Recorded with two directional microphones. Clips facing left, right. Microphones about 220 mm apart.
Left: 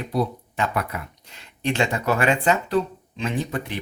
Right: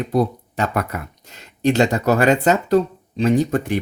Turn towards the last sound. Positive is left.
turn(degrees=-45)  # may be behind; listen again after turning